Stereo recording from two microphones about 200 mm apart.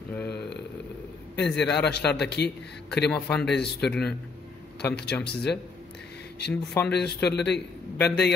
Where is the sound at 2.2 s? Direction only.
55° left (ahead or behind).